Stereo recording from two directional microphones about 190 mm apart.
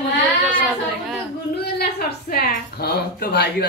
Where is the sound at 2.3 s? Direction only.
55° left (ahead or behind).